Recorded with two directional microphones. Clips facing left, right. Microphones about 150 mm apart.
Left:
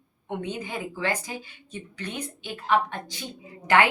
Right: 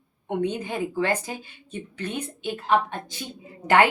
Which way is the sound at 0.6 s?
50° right (ahead or behind).